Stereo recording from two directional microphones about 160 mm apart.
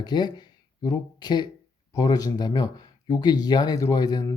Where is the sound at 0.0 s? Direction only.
25° left (ahead or behind).